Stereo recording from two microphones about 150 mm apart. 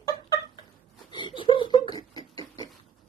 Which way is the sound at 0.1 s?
25° left (ahead or behind).